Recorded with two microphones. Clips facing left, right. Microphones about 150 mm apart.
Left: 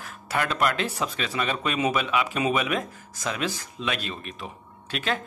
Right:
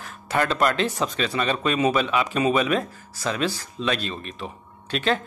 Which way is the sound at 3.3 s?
15° left (ahead or behind).